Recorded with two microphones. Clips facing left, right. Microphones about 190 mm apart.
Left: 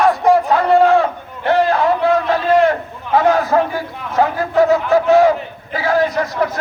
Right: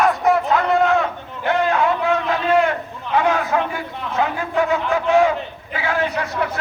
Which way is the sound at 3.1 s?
35° left (ahead or behind).